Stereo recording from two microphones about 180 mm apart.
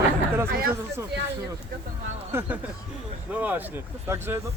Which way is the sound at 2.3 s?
15° right (ahead or behind).